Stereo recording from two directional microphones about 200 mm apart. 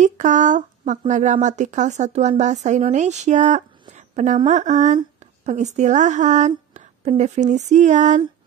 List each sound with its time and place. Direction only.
0.0 s a woman's voice: 40° right (ahead or behind)